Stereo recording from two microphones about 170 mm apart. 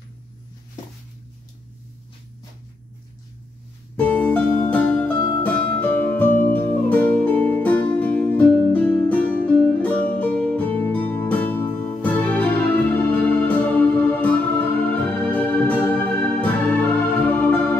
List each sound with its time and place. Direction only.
3.9 s music: 10° left (ahead or behind)